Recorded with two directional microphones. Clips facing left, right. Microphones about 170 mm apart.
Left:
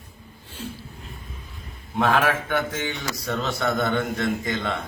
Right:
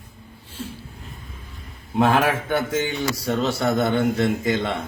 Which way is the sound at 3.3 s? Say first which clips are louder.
Right 3 dB; 30° right (ahead or behind).